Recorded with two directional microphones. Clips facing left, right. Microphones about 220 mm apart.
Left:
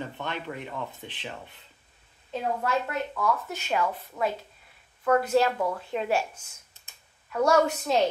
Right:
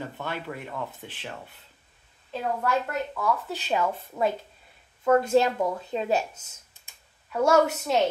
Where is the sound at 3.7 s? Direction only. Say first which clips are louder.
Right 1 dB; 25° right (ahead or behind).